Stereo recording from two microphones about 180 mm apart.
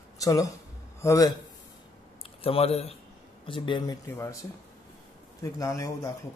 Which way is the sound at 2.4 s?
35° left (ahead or behind).